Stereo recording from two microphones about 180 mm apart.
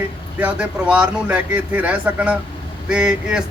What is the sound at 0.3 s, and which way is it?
A man's voice, 5° right (ahead or behind).